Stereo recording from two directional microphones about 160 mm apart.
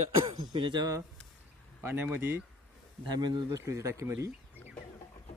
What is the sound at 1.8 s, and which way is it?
Speech, 15° right (ahead or behind).